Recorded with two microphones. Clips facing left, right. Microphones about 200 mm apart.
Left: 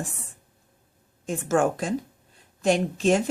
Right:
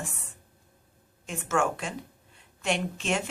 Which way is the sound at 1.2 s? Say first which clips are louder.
Left 5 dB; 35° left (ahead or behind).